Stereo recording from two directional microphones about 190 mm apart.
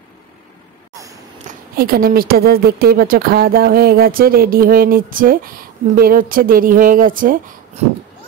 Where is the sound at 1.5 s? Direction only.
50° right (ahead or behind).